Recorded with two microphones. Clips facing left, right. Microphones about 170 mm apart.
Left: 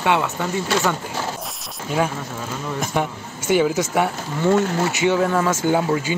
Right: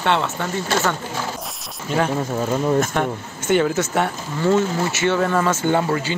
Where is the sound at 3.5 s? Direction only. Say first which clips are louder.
Even; 5° left (ahead or behind).